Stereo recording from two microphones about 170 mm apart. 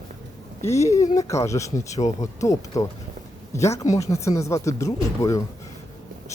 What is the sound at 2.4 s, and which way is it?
Speech, 20° left (ahead or behind).